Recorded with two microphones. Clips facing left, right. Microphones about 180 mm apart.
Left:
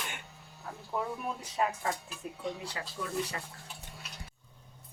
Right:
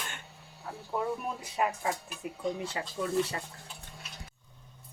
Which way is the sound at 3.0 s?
25° right (ahead or behind).